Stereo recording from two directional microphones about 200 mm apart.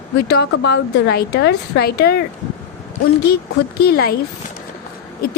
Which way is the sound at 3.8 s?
50° left (ahead or behind).